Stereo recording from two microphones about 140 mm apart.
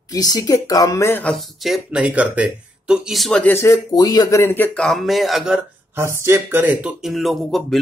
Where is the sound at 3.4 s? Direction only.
15° left (ahead or behind).